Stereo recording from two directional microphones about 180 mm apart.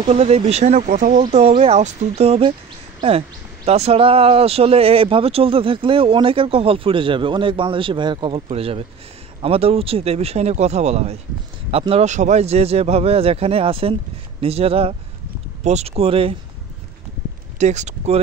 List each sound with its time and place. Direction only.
0.0 s speech: 35° right (ahead or behind)
1.2 s speech: 30° right (ahead or behind)
17.6 s speech: 40° right (ahead or behind)